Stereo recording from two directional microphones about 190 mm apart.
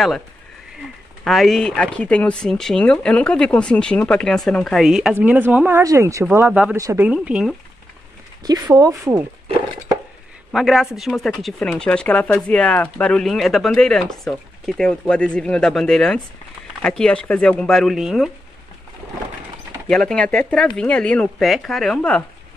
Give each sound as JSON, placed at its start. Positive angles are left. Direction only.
{"t": 1.2, "sound": "speech", "side_deg": 0}
{"t": 8.5, "sound": "speech", "side_deg": -20}
{"t": 10.5, "sound": "speech", "side_deg": 0}
{"t": 19.9, "sound": "speech", "side_deg": 5}